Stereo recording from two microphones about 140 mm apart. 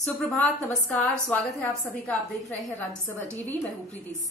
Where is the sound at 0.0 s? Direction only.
5° left (ahead or behind).